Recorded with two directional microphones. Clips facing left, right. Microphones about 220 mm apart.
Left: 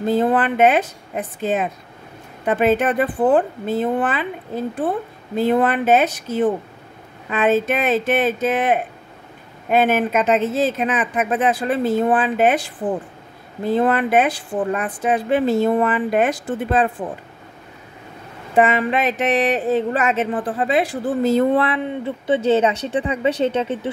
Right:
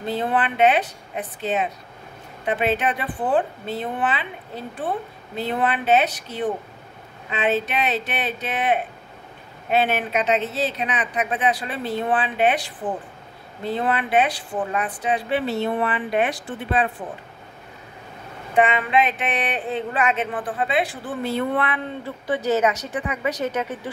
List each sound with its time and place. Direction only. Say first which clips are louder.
0.0 s speech: left 6 dB; 45° left (ahead or behind)
13.7 s speech: left 6 dB; 45° left (ahead or behind)
18.5 s a sound: left 3 dB; 40° left (ahead or behind)
21.8 s a woman's voice: left 6 dB; 20° left (ahead or behind)